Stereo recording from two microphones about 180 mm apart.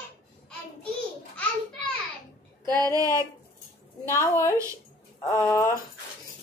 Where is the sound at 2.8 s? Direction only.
20° right (ahead or behind).